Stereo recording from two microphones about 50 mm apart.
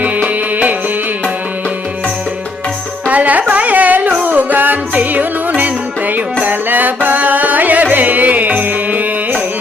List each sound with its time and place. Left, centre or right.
0.0 s music: right
3.1 s carnatic music: right
4.9 s music: right
6.4 s carnatic music: right